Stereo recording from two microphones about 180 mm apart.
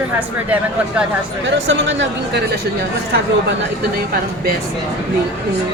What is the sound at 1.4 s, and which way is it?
Speech, 90° right.